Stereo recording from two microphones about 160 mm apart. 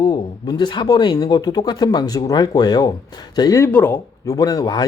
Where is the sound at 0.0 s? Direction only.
25° left (ahead or behind).